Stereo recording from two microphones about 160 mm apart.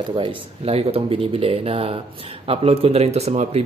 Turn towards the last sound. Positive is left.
turn(degrees=-45)  # may be behind; listen again after turning